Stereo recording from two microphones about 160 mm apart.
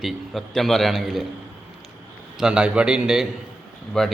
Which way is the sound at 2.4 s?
5° right (ahead or behind).